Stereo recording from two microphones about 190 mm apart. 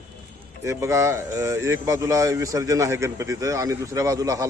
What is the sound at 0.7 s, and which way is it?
Speech, 15° right (ahead or behind).